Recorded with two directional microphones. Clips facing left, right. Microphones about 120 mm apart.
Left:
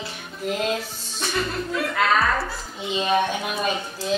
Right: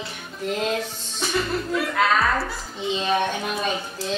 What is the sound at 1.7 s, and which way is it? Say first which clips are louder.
Speech: even; centre (ahead or behind).